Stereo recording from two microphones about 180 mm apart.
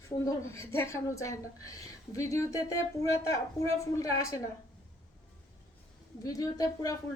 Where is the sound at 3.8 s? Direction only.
20° left (ahead or behind).